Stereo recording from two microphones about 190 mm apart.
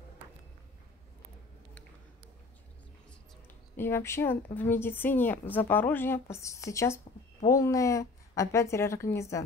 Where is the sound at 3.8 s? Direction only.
10° left (ahead or behind).